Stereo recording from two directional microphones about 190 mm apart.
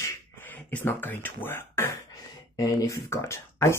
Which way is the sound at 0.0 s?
10° left (ahead or behind).